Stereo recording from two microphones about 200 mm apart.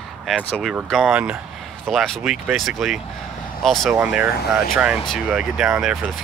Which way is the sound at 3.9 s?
10° right (ahead or behind).